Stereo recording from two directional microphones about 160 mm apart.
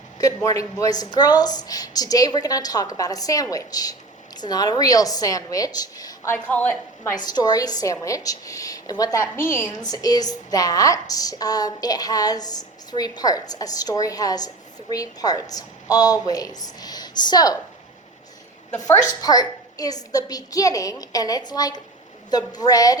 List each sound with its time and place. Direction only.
0.2 s a woman's voice: 20° left (ahead or behind)
6.3 s a woman's voice: 10° left (ahead or behind)
18.9 s a woman's voice: 25° left (ahead or behind)